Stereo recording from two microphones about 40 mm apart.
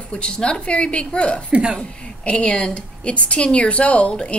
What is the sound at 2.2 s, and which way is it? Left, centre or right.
A woman's voice, left.